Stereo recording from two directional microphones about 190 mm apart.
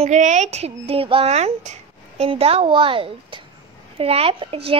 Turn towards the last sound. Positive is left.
turn(degrees=-30)  # may be behind; listen again after turning